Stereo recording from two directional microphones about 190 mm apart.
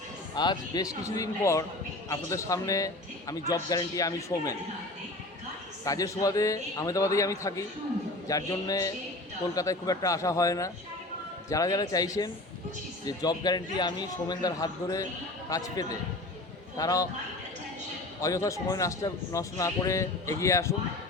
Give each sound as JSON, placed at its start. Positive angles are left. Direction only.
{"t": 0.3, "sound": "a man's voice", "side_deg": 20}
{"t": 5.8, "sound": "a man's voice", "side_deg": 20}
{"t": 18.2, "sound": "a man's voice", "side_deg": 15}